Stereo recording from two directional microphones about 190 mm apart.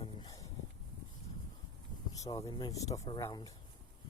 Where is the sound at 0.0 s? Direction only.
25° left (ahead or behind).